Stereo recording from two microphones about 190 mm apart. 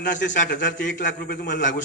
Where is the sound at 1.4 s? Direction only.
45° left (ahead or behind).